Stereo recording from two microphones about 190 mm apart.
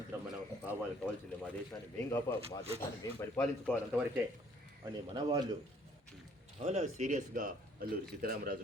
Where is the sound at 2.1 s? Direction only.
10° left (ahead or behind).